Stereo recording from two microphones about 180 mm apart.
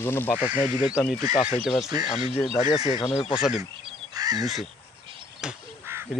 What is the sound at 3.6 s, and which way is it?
Speech, 20° right (ahead or behind).